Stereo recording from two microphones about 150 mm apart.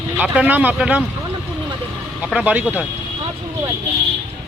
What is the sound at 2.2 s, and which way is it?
Speech, 5° right (ahead or behind).